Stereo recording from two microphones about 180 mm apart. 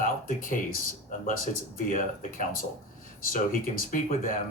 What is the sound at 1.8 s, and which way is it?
Speech, 45° left (ahead or behind).